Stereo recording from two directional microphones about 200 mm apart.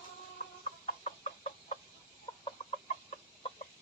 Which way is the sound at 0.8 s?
35° left (ahead or behind).